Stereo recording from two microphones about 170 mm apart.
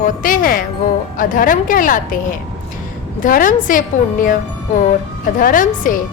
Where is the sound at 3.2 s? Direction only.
50° left (ahead or behind).